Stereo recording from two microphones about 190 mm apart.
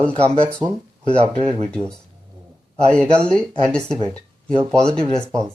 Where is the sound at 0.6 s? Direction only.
5° right (ahead or behind).